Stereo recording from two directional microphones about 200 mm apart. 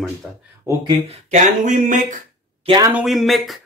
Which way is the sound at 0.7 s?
15° right (ahead or behind).